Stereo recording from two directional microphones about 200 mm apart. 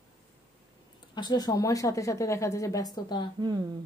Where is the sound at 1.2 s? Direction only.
20° left (ahead or behind).